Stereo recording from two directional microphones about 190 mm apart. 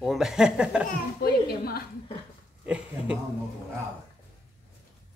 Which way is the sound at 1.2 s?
55° left (ahead or behind).